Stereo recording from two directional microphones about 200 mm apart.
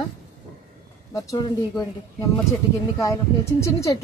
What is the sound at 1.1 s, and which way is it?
Speech, 20° left (ahead or behind).